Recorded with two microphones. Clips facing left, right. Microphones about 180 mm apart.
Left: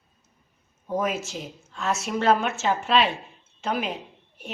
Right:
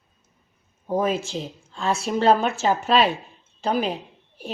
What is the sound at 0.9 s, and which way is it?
A woman's voice, 30° right (ahead or behind).